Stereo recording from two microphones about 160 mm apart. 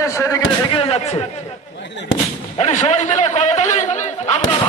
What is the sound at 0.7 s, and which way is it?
Speech, 35° left (ahead or behind).